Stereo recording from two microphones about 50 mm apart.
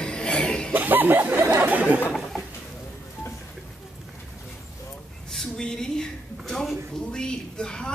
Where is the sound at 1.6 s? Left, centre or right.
Right.